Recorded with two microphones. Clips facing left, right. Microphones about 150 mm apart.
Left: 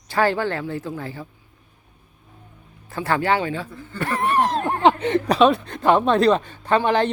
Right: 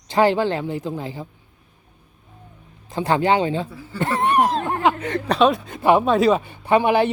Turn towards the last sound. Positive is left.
turn(degrees=-10)  # may be behind; listen again after turning